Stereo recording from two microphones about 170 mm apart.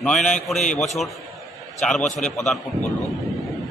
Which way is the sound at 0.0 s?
5° left (ahead or behind).